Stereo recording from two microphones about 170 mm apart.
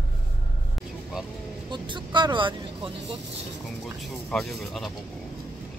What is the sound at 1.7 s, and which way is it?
Vehicle, 25° right (ahead or behind).